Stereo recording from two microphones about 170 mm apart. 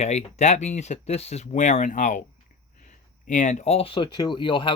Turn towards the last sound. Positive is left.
turn(degrees=30)  # may be behind; listen again after turning